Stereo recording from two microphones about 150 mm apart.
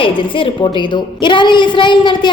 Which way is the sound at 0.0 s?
35° left (ahead or behind).